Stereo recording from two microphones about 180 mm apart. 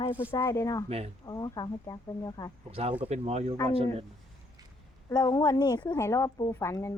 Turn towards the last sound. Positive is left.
turn(degrees=15)  # may be behind; listen again after turning